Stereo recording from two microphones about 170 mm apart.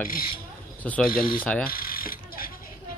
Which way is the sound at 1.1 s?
55° left (ahead or behind).